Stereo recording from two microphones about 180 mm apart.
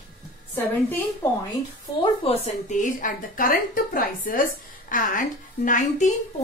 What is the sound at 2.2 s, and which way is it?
A woman's voice, 40° left (ahead or behind).